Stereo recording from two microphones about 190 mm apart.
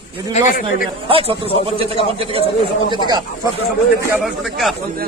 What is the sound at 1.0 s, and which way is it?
A man's voice, 30° right (ahead or behind).